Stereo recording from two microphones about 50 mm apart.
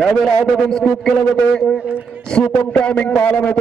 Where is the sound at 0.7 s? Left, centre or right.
Centre.